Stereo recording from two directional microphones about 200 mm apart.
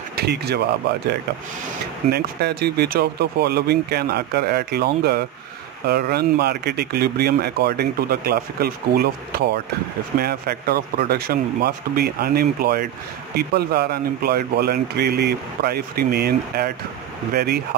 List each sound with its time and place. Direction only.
0.1 s speech: 55° right (ahead or behind)
2.0 s speech: 55° right (ahead or behind)